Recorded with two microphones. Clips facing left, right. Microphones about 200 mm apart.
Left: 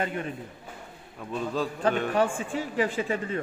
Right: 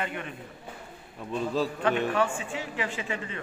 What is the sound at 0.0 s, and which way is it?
Speech, 40° left (ahead or behind).